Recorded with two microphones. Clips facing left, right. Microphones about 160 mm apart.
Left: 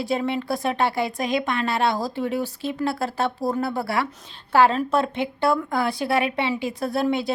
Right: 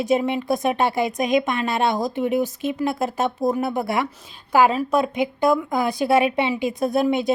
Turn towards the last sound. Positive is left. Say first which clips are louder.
# right 3 dB
turn(degrees=-20)  # may be behind; listen again after turning